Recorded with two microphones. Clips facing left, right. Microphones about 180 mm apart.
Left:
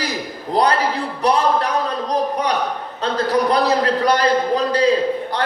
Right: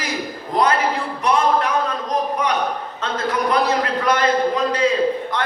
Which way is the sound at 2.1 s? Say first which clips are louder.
Left 2 dB; 35° left (ahead or behind).